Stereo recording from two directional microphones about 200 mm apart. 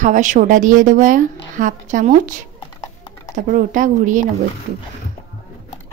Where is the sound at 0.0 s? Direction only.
40° right (ahead or behind).